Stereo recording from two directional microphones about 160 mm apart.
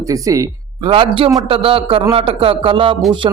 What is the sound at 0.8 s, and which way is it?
Speech, 35° right (ahead or behind).